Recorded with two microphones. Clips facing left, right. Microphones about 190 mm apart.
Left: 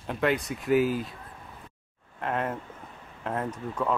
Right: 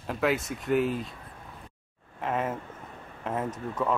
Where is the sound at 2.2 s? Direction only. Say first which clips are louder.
Even; centre (ahead or behind).